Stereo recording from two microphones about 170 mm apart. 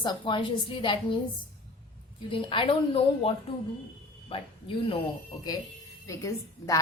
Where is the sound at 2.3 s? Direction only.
30° left (ahead or behind).